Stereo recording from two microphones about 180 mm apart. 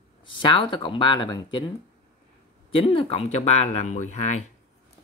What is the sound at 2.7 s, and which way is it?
Speech, 30° left (ahead or behind).